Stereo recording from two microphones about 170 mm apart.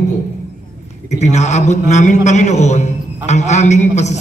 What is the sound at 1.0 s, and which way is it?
A man's voice, 40° left (ahead or behind).